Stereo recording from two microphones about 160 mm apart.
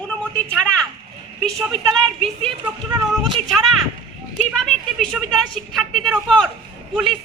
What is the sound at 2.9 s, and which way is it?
Speech, 30° right (ahead or behind).